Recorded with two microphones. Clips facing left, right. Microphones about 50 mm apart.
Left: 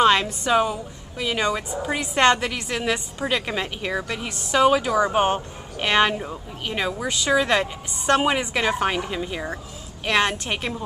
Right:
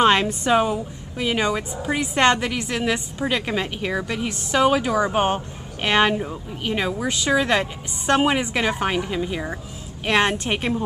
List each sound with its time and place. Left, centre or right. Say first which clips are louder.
0.0 s a sound: right 1 dB; centre
0.5 s a woman's voice: right 1 dB; centre
10.0 s a woman's voice: right 2 dB; centre